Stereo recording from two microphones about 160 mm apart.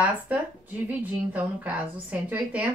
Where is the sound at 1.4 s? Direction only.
10° right (ahead or behind).